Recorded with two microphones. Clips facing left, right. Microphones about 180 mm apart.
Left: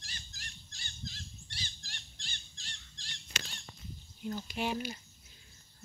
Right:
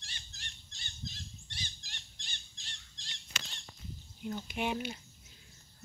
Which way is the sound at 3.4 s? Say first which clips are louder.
Left 2 dB; 70° left (ahead or behind).